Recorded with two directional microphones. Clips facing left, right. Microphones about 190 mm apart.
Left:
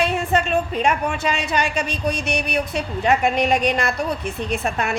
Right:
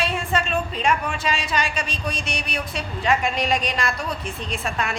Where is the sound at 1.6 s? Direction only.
60° left (ahead or behind).